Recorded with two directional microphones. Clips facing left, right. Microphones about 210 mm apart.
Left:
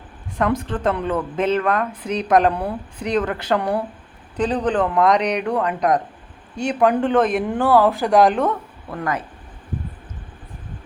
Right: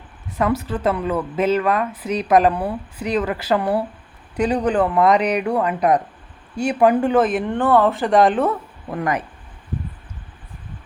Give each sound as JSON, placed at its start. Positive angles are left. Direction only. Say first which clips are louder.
{"t": 0.3, "sound": "speech", "louder": "even", "side_deg": -5}
{"t": 8.9, "sound": "speech", "louder": "right 2 dB", "side_deg": -15}